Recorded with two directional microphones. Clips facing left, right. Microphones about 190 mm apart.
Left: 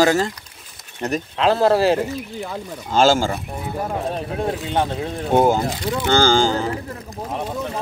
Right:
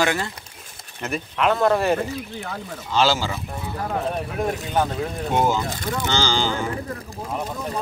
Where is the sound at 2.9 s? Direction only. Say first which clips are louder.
Left 5 dB; 50° left (ahead or behind).